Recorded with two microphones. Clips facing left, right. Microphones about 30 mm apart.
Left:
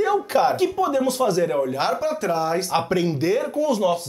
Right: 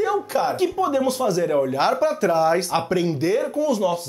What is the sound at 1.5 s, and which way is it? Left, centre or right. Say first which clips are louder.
Speech: right 2 dB; centre.